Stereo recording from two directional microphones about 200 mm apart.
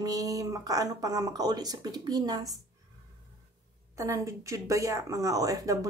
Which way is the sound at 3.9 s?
15° right (ahead or behind).